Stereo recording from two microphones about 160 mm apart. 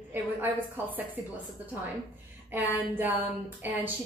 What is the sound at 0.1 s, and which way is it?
Speech, 10° right (ahead or behind).